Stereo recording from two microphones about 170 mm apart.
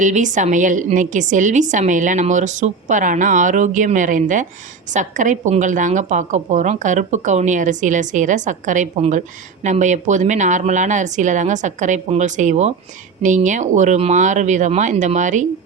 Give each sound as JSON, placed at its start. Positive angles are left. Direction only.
{"t": 0.0, "sound": "a woman's voice", "side_deg": -45}